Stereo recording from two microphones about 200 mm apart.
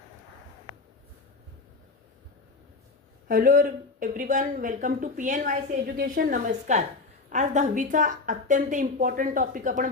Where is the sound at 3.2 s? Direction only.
45° right (ahead or behind).